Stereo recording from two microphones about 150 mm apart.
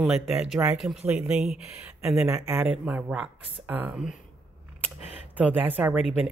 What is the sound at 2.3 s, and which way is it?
Speech, 20° right (ahead or behind).